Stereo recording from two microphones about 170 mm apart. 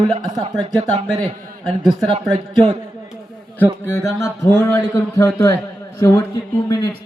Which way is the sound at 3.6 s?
15° left (ahead or behind).